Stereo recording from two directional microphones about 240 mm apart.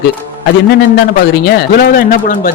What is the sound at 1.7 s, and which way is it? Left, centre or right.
Speech, left.